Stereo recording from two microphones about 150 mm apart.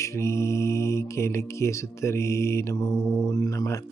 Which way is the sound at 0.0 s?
20° left (ahead or behind).